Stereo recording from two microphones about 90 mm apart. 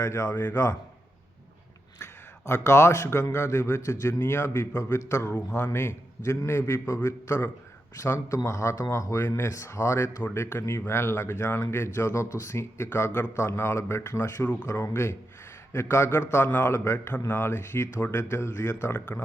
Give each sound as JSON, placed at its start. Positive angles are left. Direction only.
{"t": 0.0, "sound": "a man's voice", "side_deg": 35}
{"t": 0.3, "sound": "speech", "side_deg": 20}
{"t": 0.5, "sound": "a man's voice", "side_deg": 35}
{"t": 2.5, "sound": "a man's voice", "side_deg": 30}